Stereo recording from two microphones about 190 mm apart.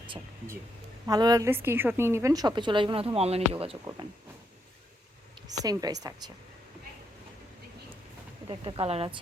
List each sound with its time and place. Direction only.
1.0 s a woman's voice: 20° right (ahead or behind)
5.5 s a woman's voice: 20° right (ahead or behind)
8.4 s a woman's voice: 25° right (ahead or behind)